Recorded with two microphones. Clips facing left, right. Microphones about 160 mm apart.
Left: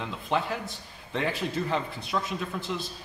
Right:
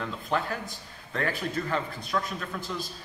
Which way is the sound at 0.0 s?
20° left (ahead or behind).